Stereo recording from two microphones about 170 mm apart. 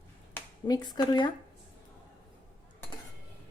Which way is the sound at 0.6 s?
25° left (ahead or behind).